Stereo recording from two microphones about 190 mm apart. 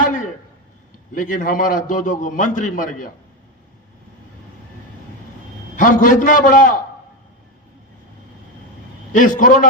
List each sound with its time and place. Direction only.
0.0 s a sound: 40° left (ahead or behind)
1.1 s a man's voice: 45° left (ahead or behind)
5.7 s a man's voice: 45° left (ahead or behind)
9.1 s a man's voice: 45° left (ahead or behind)